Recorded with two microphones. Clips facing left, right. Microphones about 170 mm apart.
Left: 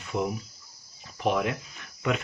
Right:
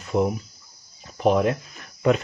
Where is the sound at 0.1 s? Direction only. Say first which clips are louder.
Right 7 dB; 40° right (ahead or behind).